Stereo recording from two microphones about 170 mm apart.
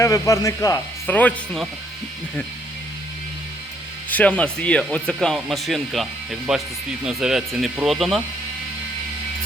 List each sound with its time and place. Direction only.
0.0 s speech: 20° left (ahead or behind)
4.1 s speech: 10° left (ahead or behind)